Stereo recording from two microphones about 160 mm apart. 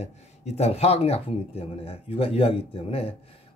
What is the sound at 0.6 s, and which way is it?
Speech, 40° left (ahead or behind).